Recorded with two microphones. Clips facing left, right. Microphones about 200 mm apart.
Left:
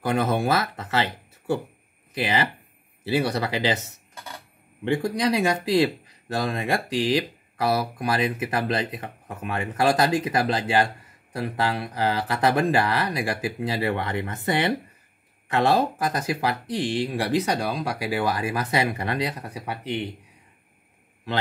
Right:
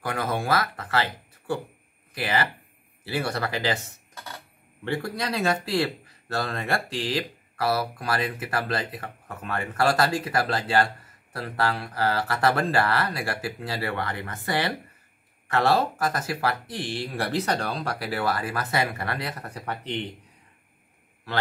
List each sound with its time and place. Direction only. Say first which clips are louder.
0.0 s speech: left 5 dB; 25° left (ahead or behind)